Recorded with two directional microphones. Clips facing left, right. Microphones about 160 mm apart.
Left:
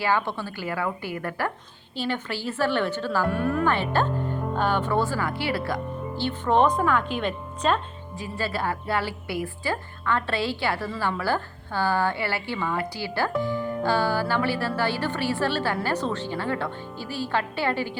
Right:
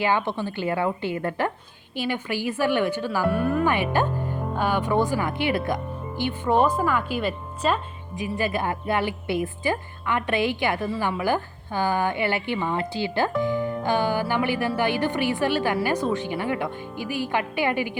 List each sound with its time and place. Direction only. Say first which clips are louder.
0.0 s a woman's voice: right 2 dB; 20° right (ahead or behind)
2.0 s a woman's voice: right 2 dB; 10° right (ahead or behind)
8.2 s a woman's voice: right 3 dB; 15° right (ahead or behind)